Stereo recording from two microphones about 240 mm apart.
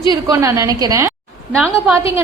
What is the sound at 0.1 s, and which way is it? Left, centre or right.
A woman's voice, centre.